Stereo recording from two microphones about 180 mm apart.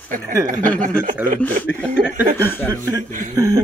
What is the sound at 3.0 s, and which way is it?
Speech, 45° right (ahead or behind).